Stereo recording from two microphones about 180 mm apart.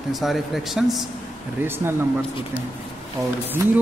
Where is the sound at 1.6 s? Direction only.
10° right (ahead or behind).